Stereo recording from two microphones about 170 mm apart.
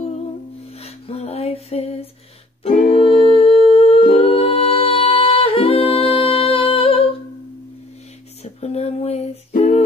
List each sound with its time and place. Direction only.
0.8 s music: 35° left (ahead or behind)
2.9 s humming: 35° left (ahead or behind)
8.5 s music: 40° left (ahead or behind)
9.5 s a sound: 50° left (ahead or behind)